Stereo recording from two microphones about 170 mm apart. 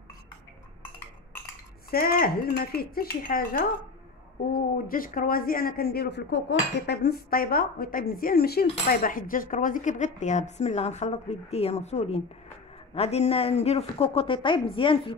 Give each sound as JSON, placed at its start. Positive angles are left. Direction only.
{"t": 1.9, "sound": "speech", "side_deg": 60}
{"t": 6.9, "sound": "a woman's voice", "side_deg": 75}